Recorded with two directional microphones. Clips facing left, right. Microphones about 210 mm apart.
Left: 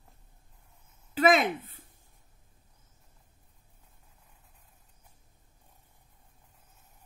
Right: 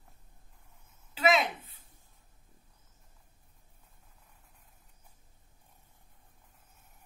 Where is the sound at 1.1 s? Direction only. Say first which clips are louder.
Left 4 dB; 50° left (ahead or behind).